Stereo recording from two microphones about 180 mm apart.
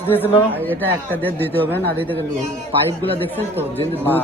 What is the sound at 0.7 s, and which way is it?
A man's voice, 10° left (ahead or behind).